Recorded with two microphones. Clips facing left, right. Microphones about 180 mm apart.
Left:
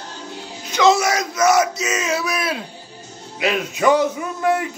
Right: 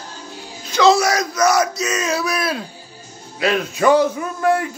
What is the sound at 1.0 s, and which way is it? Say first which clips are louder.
Speech: right 1 dB; 20° left (ahead or behind).